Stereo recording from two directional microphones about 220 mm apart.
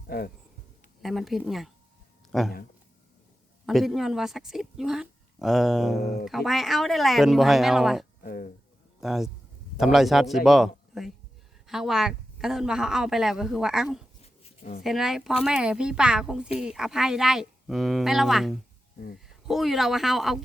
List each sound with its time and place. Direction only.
1.0 s a woman's voice: centre (ahead or behind)
3.7 s a woman's voice: centre (ahead or behind)
8.2 s a sound: 40° left (ahead or behind)
9.0 s a woman's voice: centre (ahead or behind)